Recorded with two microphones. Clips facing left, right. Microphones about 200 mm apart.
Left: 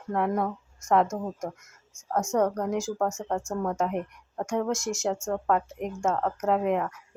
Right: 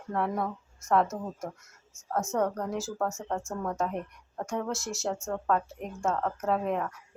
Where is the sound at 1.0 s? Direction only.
5° right (ahead or behind).